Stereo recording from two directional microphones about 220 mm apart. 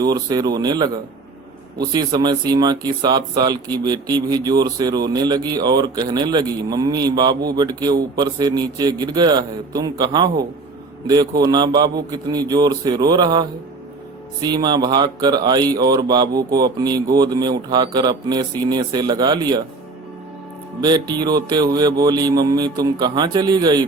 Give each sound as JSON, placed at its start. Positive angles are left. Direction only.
{"t": 0.0, "sound": "speech", "side_deg": -20}
{"t": 20.8, "sound": "speech", "side_deg": -20}